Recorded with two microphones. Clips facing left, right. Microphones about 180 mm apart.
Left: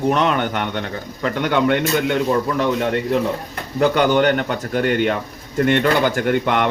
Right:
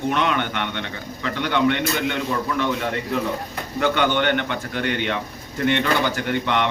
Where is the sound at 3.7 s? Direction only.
40° left (ahead or behind).